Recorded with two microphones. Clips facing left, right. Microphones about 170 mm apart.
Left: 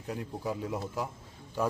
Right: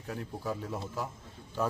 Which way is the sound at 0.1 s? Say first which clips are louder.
Left 1 dB; 15° left (ahead or behind).